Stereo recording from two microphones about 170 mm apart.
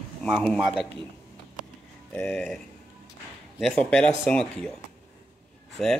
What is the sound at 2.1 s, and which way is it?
Speech, 5° left (ahead or behind).